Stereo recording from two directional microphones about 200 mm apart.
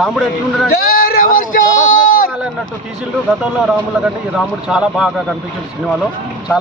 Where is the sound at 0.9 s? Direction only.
50° left (ahead or behind).